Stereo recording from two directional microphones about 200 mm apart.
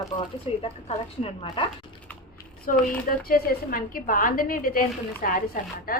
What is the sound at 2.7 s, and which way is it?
A woman's voice, 40° left (ahead or behind).